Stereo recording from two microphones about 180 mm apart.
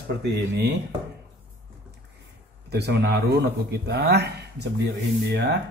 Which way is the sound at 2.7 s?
65° right (ahead or behind).